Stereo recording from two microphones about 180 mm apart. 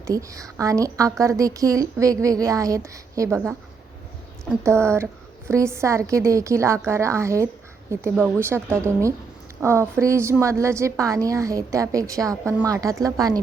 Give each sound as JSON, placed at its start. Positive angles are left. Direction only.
{"t": 0.0, "sound": "a woman's voice", "side_deg": -20}
{"t": 4.6, "sound": "a woman's voice", "side_deg": -15}